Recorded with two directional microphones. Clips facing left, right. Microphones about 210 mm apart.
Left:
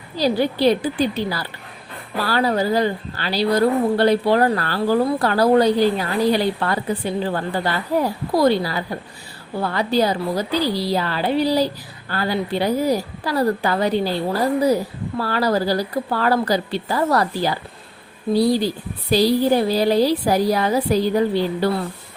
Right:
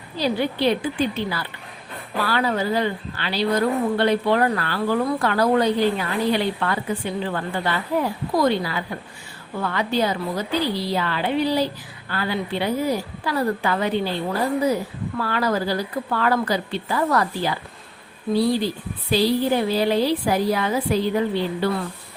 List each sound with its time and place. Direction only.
0.2 s a woman's voice: 35° left (ahead or behind)